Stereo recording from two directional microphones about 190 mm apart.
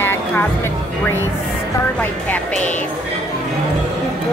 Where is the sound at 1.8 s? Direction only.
10° left (ahead or behind).